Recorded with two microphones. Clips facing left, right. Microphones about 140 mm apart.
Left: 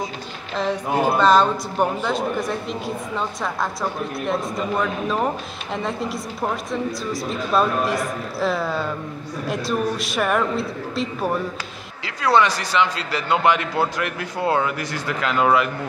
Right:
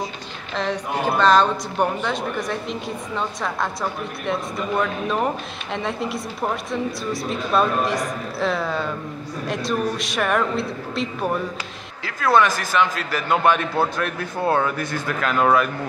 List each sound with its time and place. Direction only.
0.6 s speech: 5° left (ahead or behind)
12.0 s a man's voice: 20° left (ahead or behind)
14.4 s speech: 5° left (ahead or behind)
15.0 s a man's voice: 20° left (ahead or behind)